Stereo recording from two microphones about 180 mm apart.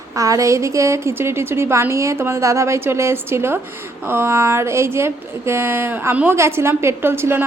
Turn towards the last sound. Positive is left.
turn(degrees=-15)  # may be behind; listen again after turning